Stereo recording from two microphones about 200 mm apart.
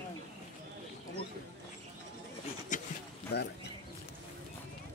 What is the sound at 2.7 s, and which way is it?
Speech, 40° left (ahead or behind).